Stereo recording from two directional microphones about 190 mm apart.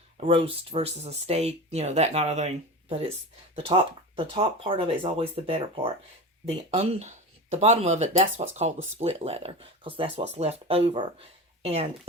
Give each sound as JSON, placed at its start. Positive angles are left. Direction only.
{"t": 0.2, "sound": "speech", "side_deg": -30}